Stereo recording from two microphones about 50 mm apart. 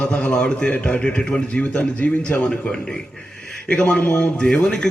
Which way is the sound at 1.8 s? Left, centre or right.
Left.